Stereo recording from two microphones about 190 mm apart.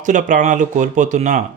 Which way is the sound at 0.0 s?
40° right (ahead or behind).